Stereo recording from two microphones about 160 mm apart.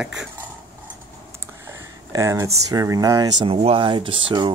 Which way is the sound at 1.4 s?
20° right (ahead or behind).